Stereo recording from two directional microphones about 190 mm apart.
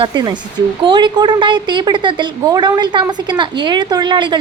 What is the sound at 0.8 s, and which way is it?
A woman's voice, 25° right (ahead or behind).